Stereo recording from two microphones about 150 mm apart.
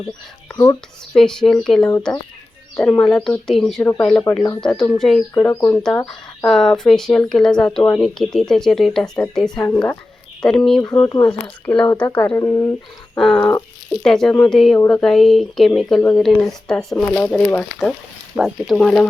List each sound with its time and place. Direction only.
0.5 s speech: 25° left (ahead or behind)
1.1 s speech: 5° left (ahead or behind)
4.1 s speech: 20° left (ahead or behind)
4.6 s speech: 5° left (ahead or behind)
5.3 s speech: 20° left (ahead or behind)
6.1 s speech: 5° left (ahead or behind)
9.6 s speech: 15° left (ahead or behind)
10.4 s speech: 5° left (ahead or behind)
10.9 s speech: 25° left (ahead or behind)
11.3 s speech: 10° left (ahead or behind)
13.1 s speech: 5° left (ahead or behind)
18.8 s speech: 5° left (ahead or behind)